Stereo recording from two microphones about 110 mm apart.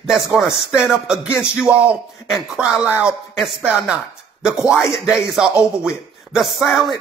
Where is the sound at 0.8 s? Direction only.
5° right (ahead or behind).